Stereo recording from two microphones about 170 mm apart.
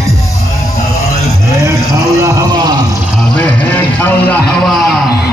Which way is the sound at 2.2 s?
25° right (ahead or behind).